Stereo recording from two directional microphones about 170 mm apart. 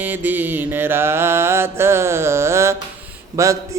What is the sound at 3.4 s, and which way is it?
Speech, 20° right (ahead or behind).